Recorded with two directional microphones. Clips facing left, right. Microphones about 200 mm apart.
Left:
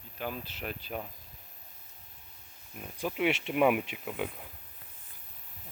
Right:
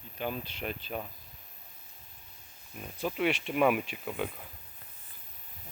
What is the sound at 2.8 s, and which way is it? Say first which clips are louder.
Speech: even; 10° left (ahead or behind).